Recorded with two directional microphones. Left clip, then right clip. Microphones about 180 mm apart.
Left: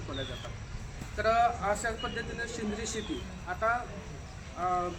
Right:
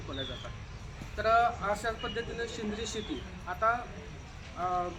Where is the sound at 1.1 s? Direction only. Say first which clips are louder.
Even; centre (ahead or behind).